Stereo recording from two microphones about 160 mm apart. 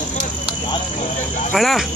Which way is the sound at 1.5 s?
Centre (ahead or behind).